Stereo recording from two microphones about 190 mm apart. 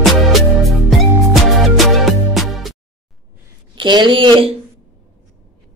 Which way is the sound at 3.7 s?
25° right (ahead or behind).